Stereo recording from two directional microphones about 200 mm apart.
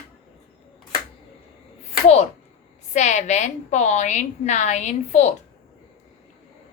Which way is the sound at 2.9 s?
35° left (ahead or behind).